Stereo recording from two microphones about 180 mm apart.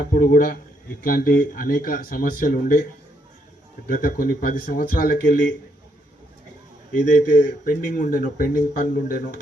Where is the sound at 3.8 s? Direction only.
50° left (ahead or behind).